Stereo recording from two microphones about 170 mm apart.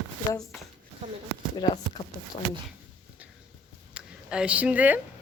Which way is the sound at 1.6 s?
25° left (ahead or behind).